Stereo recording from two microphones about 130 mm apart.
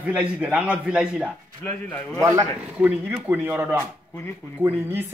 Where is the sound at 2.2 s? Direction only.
25° right (ahead or behind).